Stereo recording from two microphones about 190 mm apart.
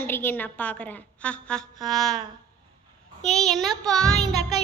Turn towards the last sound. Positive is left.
turn(degrees=5)  # may be behind; listen again after turning